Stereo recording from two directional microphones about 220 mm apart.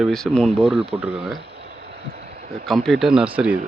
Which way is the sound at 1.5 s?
50° right (ahead or behind).